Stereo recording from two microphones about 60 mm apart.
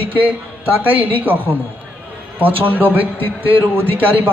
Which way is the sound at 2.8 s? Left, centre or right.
Right.